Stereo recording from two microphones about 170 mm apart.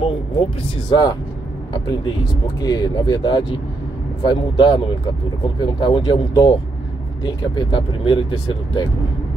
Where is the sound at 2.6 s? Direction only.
25° left (ahead or behind).